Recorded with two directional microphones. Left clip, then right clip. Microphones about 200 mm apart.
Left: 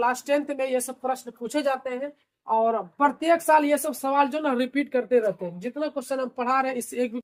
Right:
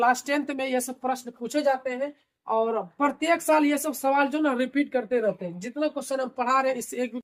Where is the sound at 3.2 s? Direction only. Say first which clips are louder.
Left 2 dB; 30° left (ahead or behind).